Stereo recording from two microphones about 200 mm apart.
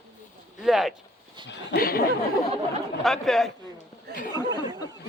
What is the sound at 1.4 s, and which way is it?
Speech, 50° left (ahead or behind).